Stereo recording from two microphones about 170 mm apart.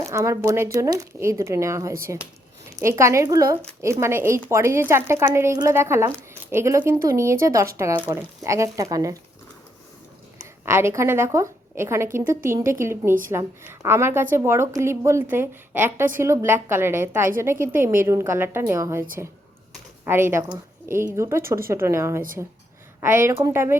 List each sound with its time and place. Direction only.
0.0 s a woman's voice: 20° right (ahead or behind)
10.7 s speech: 15° right (ahead or behind)
20.1 s speech: 15° right (ahead or behind)